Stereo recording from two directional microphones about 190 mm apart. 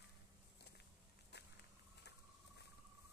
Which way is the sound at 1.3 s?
60° left (ahead or behind).